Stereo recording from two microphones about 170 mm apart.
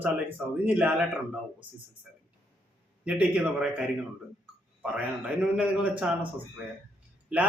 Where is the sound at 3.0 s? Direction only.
5° right (ahead or behind).